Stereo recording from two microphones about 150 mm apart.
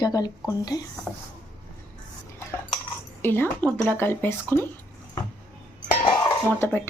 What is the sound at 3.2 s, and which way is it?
Speech, 15° left (ahead or behind).